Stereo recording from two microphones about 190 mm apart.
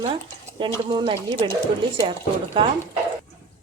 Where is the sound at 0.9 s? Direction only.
25° right (ahead or behind).